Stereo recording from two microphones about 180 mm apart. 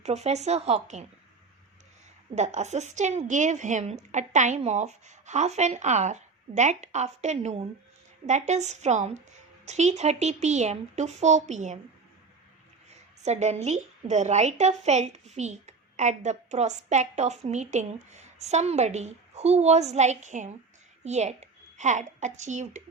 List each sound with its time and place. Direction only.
0.0 s a woman's voice: 40° right (ahead or behind)
2.3 s a woman's voice: 40° right (ahead or behind)
12.9 s a woman's voice: 40° right (ahead or behind)